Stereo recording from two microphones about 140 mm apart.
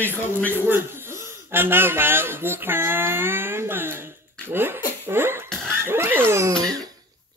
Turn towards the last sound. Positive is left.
turn(degrees=-25)  # may be behind; listen again after turning